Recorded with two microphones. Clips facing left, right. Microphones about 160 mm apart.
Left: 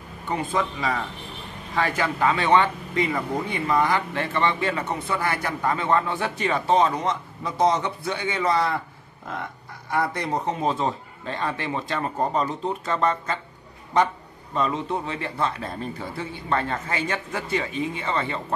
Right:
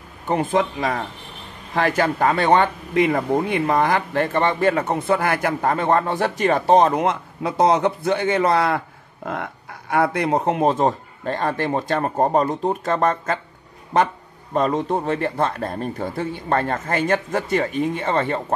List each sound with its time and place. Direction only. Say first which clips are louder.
0.3 s speech: right 6 dB; 50° right (ahead or behind)
2.9 s speech: right 6 dB; 55° right (ahead or behind)
7.0 s a man's voice: right 6 dB; 65° right (ahead or behind)
9.9 s speech: right 6 dB; 60° right (ahead or behind); by 13.4 s 45° right (ahead or behind)
14.5 s speech: right 5 dB; 45° right (ahead or behind)